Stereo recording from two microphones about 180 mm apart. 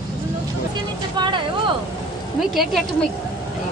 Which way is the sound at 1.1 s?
25° right (ahead or behind).